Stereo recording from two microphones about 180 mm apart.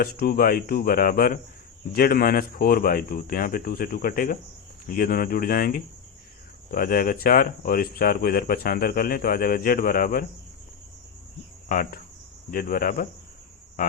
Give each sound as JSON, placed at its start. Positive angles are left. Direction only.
{"t": 0.0, "sound": "speech", "side_deg": 55}
{"t": 11.7, "sound": "speech", "side_deg": 50}
{"t": 13.8, "sound": "a sound", "side_deg": 50}